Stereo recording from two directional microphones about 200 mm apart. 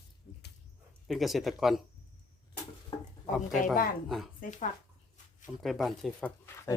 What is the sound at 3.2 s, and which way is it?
Speech, 40° left (ahead or behind).